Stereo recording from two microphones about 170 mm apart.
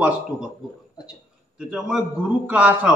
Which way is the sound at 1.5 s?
5° right (ahead or behind).